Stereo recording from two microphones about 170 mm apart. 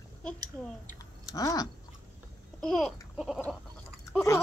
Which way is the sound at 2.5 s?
Centre (ahead or behind).